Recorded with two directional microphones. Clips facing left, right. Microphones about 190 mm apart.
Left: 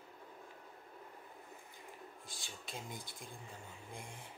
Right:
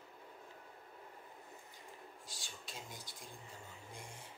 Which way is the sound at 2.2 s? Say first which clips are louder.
Left 2 dB; 55° left (ahead or behind).